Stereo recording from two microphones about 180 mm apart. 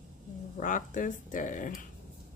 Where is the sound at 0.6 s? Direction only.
45° left (ahead or behind).